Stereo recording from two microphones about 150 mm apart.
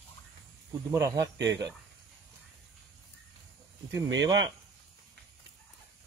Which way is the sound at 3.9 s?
25° right (ahead or behind).